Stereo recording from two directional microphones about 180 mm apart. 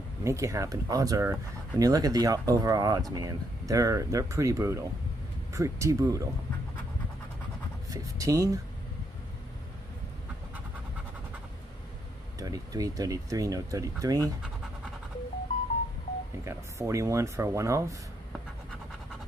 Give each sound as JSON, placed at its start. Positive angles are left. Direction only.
{"t": 0.2, "sound": "speech", "side_deg": -15}
{"t": 7.9, "sound": "speech", "side_deg": -20}
{"t": 12.4, "sound": "speech", "side_deg": -20}
{"t": 16.4, "sound": "speech", "side_deg": -15}